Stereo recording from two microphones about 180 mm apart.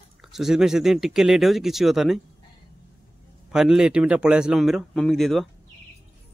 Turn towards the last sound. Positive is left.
turn(degrees=0)  # may be behind; listen again after turning